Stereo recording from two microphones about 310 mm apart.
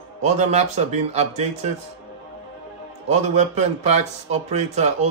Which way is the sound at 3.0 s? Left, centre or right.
Right.